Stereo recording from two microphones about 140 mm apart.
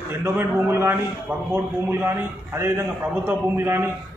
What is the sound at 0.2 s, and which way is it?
A man's voice, 20° right (ahead or behind).